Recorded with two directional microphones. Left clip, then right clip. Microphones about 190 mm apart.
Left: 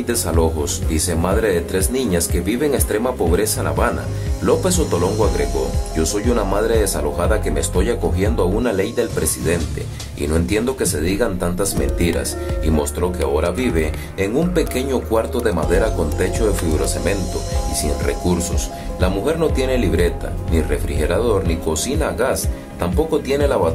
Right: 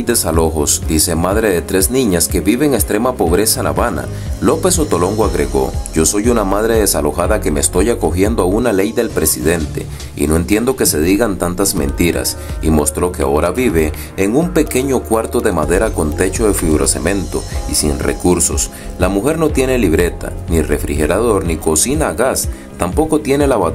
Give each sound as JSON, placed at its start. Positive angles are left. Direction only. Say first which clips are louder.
{"t": 0.0, "sound": "speech", "louder": "right 4 dB", "side_deg": -30}